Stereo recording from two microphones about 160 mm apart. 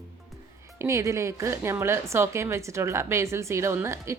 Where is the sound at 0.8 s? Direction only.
20° right (ahead or behind).